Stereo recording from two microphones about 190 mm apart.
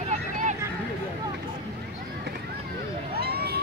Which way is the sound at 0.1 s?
40° right (ahead or behind).